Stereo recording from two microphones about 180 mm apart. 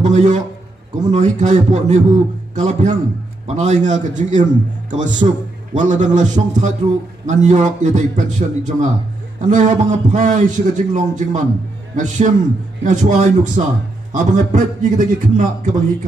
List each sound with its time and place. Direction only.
0.0 s a man's voice: 40° right (ahead or behind)